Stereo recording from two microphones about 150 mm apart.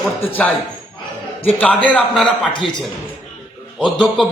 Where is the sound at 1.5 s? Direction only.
10° left (ahead or behind).